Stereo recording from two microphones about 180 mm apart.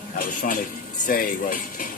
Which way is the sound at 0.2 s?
50° left (ahead or behind).